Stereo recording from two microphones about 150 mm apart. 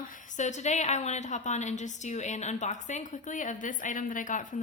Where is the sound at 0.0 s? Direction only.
60° left (ahead or behind).